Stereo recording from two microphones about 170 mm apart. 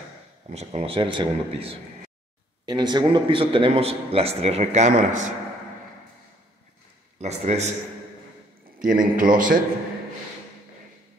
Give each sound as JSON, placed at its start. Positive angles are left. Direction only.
{"t": 0.5, "sound": "speech", "side_deg": -35}
{"t": 7.2, "sound": "speech", "side_deg": -40}
{"t": 8.8, "sound": "a man's voice", "side_deg": -50}